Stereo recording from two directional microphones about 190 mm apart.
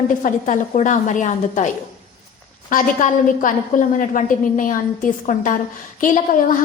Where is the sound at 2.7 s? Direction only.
45° left (ahead or behind).